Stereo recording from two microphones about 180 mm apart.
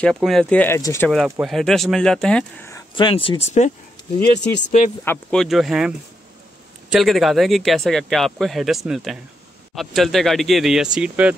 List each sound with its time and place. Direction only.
0.0 s speech: centre (ahead or behind)
1.4 s speech: centre (ahead or behind)
3.0 s speech: 30° left (ahead or behind)
5.0 s speech: 5° left (ahead or behind)